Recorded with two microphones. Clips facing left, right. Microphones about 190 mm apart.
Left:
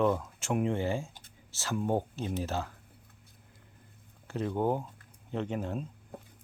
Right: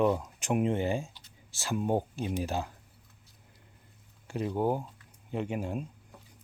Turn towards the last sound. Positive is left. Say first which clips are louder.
# right 1 dB
turn(degrees=-10)  # may be behind; listen again after turning